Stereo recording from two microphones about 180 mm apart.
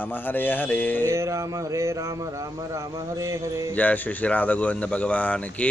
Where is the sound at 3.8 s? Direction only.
10° left (ahead or behind).